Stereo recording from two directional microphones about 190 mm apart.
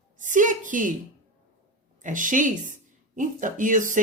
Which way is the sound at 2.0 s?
45° right (ahead or behind).